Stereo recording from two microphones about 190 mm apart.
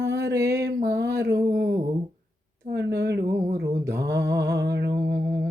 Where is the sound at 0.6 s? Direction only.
60° right (ahead or behind).